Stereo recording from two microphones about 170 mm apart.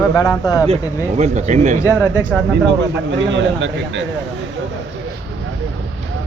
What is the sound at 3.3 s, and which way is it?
Speech, 90° right.